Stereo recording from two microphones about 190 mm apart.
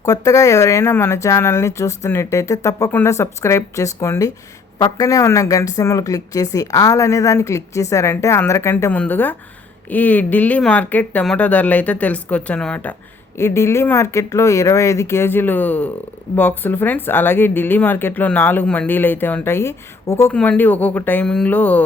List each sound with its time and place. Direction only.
0.0 s speech: 15° left (ahead or behind)